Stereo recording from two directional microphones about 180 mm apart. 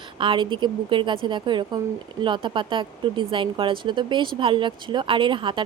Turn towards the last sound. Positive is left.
turn(degrees=-25)  # may be behind; listen again after turning